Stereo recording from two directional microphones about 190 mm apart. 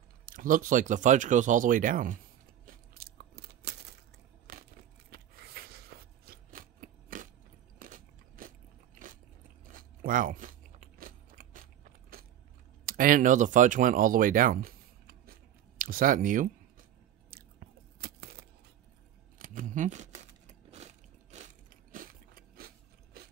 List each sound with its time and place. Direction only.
0.2 s speech: 45° right (ahead or behind)
2.6 s crunch: 50° right (ahead or behind)
4.5 s a sound: 45° right (ahead or behind)
7.8 s biting: 45° right (ahead or behind)
9.7 s crunch: 45° right (ahead or behind)
12.8 s speech: 45° right (ahead or behind)
17.3 s chewing: 50° right (ahead or behind)
19.3 s crumpling: 45° right (ahead or behind)